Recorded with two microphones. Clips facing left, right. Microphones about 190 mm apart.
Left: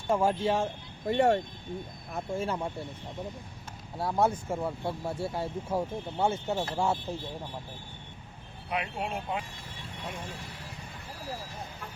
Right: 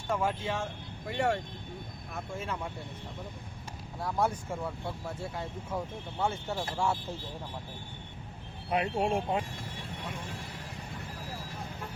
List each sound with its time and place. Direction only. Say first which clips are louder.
0.1 s speech: left 5 dB; 30° left (ahead or behind)
3.9 s speech: left 4 dB; 30° left (ahead or behind)
8.7 s speech: right 5 dB; 40° right (ahead or behind)